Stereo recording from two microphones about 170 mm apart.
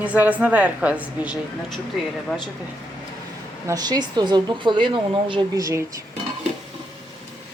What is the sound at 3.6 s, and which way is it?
Speech, 20° right (ahead or behind).